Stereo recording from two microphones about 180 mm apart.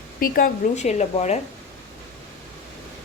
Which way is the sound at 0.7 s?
40° left (ahead or behind).